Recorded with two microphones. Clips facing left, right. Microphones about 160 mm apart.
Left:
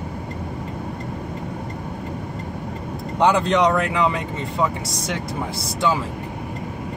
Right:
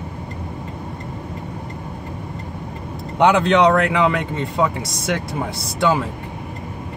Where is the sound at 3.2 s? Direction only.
70° right (ahead or behind).